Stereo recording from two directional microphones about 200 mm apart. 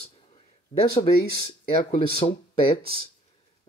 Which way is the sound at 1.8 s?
25° left (ahead or behind).